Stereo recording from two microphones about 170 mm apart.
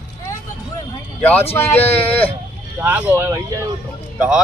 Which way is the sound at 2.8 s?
10° right (ahead or behind).